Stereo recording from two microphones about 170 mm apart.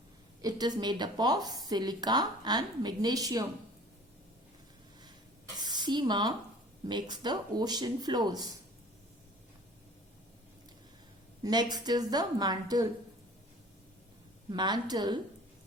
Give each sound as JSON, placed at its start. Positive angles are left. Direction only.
{"t": 0.4, "sound": "speech", "side_deg": -25}
{"t": 5.5, "sound": "a sound", "side_deg": -25}
{"t": 6.8, "sound": "speech", "side_deg": -25}
{"t": 11.4, "sound": "speech", "side_deg": -25}
{"t": 14.5, "sound": "speech", "side_deg": -25}